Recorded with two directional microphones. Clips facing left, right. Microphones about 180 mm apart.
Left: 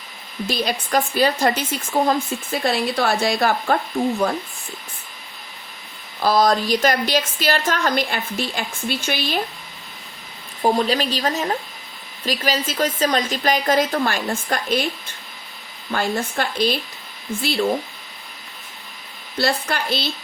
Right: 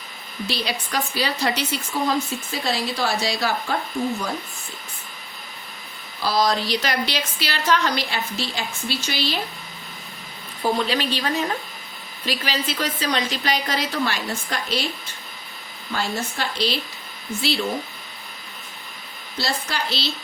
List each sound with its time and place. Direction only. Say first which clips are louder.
0.4 s a woman's voice: left 4 dB; 45° left (ahead or behind)
6.2 s a woman's voice: left 4 dB; 50° left (ahead or behind)
10.6 s a woman's voice: left 4 dB; 40° left (ahead or behind)
15.9 s a woman's voice: left 4 dB; 55° left (ahead or behind)
19.4 s speech: left 5 dB; 55° left (ahead or behind)